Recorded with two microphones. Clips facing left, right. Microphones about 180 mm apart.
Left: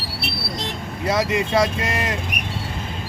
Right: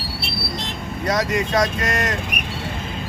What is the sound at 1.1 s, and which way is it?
Speech, 5° left (ahead or behind).